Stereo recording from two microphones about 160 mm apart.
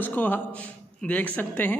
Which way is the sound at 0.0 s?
10° left (ahead or behind).